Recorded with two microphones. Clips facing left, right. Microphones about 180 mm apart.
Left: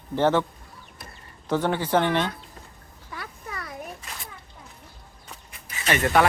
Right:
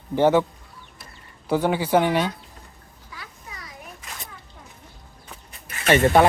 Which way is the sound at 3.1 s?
60° left (ahead or behind).